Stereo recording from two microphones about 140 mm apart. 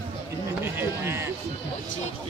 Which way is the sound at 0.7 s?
20° right (ahead or behind).